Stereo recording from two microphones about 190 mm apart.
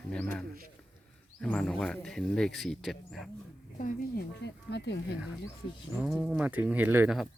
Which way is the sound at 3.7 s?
45° left (ahead or behind).